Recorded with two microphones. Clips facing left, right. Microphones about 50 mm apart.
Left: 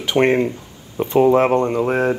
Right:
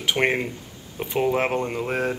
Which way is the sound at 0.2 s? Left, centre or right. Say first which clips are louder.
Left 9 dB; centre.